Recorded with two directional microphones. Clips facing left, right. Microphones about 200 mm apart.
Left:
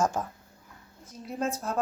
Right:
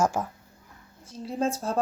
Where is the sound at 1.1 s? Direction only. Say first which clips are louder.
Right 4 dB; 30° right (ahead or behind).